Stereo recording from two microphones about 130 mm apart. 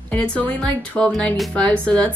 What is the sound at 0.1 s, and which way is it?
Speech, 10° left (ahead or behind).